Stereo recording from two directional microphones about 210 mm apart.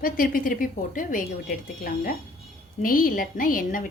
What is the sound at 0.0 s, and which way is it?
A woman's voice, 40° left (ahead or behind).